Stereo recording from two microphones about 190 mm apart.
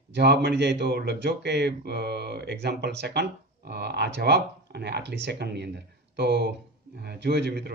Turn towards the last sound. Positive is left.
turn(degrees=-60)  # may be behind; listen again after turning